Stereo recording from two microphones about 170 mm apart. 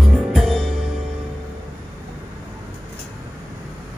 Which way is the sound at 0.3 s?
Centre (ahead or behind).